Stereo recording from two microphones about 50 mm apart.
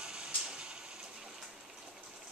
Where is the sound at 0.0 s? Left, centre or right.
Centre.